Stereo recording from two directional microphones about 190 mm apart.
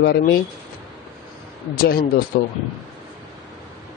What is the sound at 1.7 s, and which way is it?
Speech, 50° left (ahead or behind).